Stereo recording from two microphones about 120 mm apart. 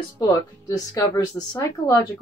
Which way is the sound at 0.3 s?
25° left (ahead or behind).